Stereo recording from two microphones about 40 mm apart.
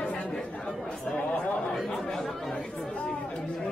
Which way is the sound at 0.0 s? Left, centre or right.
Left.